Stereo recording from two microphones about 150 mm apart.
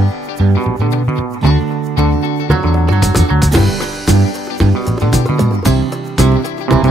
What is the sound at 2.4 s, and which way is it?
Music, centre (ahead or behind).